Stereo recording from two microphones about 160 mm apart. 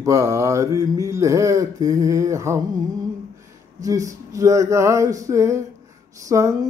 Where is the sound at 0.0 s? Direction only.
20° right (ahead or behind).